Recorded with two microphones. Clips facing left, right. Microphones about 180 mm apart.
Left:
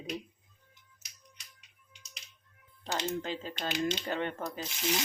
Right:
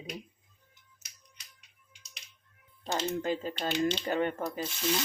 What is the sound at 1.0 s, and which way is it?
Music, centre (ahead or behind).